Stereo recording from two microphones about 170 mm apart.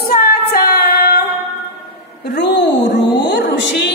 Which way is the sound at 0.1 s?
60° left (ahead or behind).